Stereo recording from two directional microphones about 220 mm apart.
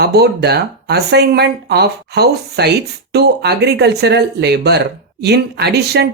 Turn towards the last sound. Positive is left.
turn(degrees=-50)  # may be behind; listen again after turning